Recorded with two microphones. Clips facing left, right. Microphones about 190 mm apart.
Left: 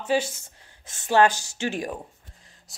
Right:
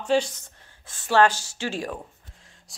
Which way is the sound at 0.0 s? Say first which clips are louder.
Right 2 dB; 5° left (ahead or behind).